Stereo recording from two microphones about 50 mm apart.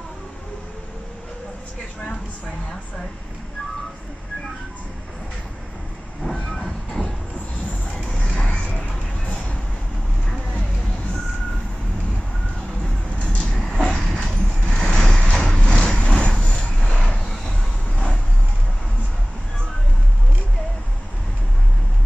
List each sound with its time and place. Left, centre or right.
6.4 s train: centre
8.2 s music: centre
13.2 s vehicle: left
15.3 s a sound: centre
16.0 s vehicle: centre